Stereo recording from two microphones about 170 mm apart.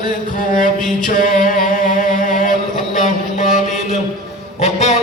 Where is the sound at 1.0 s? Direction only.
50° left (ahead or behind).